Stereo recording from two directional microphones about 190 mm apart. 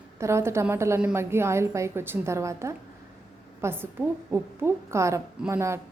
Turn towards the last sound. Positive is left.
turn(degrees=-15)  # may be behind; listen again after turning